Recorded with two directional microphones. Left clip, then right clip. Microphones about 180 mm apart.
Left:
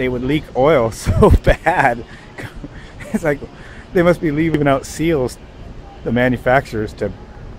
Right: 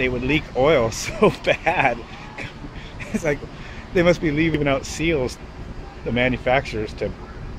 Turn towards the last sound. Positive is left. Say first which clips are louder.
# left 5 dB
turn(degrees=40)  # may be behind; listen again after turning